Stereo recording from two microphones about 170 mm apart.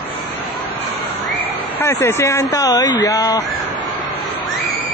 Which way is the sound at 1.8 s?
15° left (ahead or behind).